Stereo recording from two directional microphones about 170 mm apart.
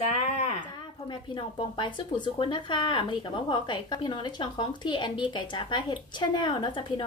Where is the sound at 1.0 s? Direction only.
30° left (ahead or behind).